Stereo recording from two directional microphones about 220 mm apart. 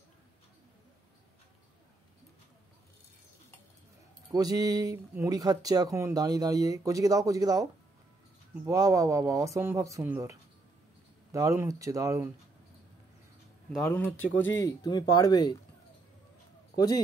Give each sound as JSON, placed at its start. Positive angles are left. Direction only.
{"t": 4.3, "sound": "speech", "side_deg": -15}
{"t": 8.6, "sound": "speech", "side_deg": -15}
{"t": 11.3, "sound": "speech", "side_deg": -15}
{"t": 13.8, "sound": "speech", "side_deg": 10}
{"t": 14.1, "sound": "speech", "side_deg": 65}
{"t": 14.6, "sound": "speech", "side_deg": 20}
{"t": 16.7, "sound": "speech", "side_deg": 15}